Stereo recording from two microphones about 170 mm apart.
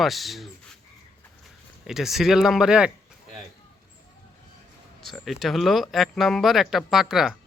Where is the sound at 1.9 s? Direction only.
Centre (ahead or behind).